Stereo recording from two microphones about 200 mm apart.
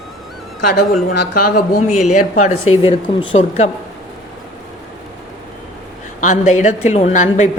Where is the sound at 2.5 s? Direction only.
90° left.